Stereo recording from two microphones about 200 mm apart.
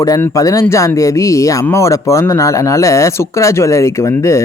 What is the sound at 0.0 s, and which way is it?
Speech, 15° left (ahead or behind).